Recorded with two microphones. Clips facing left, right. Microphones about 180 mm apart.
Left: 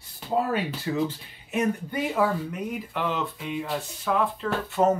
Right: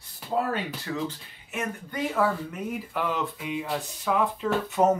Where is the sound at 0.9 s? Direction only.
20° left (ahead or behind).